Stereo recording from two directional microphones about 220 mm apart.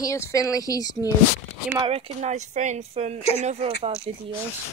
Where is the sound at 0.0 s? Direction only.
15° left (ahead or behind).